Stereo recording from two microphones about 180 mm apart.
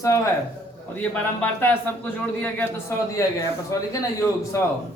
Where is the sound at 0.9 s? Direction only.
10° left (ahead or behind).